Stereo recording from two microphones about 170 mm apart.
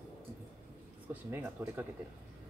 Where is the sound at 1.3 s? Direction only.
10° right (ahead or behind).